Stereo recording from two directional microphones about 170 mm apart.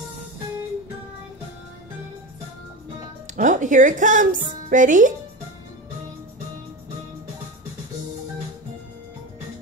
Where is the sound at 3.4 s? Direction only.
50° right (ahead or behind).